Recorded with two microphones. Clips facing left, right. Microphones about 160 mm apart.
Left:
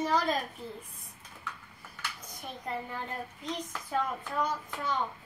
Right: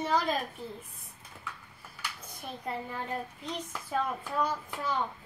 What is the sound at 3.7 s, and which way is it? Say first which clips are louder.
Speech: right 1 dB; 10° right (ahead or behind).